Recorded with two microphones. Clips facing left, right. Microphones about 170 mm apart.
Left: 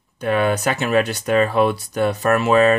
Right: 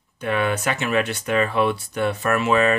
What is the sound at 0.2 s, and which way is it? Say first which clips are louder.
Speech: left 4 dB; 40° left (ahead or behind).